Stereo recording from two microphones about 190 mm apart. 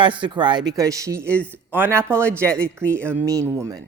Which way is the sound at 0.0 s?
25° right (ahead or behind).